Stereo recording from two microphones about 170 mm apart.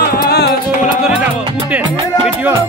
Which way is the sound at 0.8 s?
5° right (ahead or behind).